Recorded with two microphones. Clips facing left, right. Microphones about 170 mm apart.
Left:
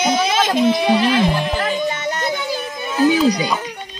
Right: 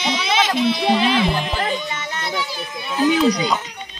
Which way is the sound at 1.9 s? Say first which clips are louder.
Left 7 dB; 45° left (ahead or behind).